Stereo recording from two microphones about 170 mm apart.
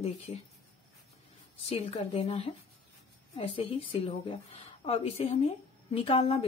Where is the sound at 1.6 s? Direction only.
35° left (ahead or behind).